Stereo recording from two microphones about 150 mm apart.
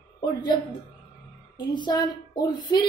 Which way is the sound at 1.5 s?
30° left (ahead or behind).